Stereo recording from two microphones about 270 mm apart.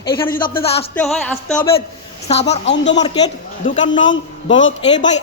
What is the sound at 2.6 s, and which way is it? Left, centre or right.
Speech, left.